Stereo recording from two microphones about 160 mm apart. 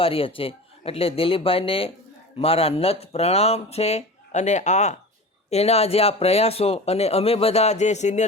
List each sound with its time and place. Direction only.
0.0 s speech: 35° left (ahead or behind)